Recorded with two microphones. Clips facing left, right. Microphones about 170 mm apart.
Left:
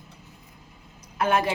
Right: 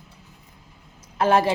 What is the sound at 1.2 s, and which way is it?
Speech, 30° right (ahead or behind).